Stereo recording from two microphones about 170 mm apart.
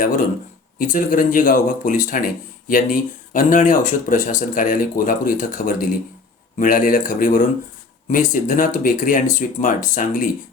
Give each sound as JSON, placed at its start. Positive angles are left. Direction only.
{"t": 0.8, "sound": "speech", "side_deg": 50}